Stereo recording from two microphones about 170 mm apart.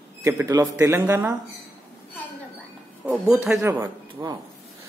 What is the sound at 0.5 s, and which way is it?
Speech, 15° right (ahead or behind).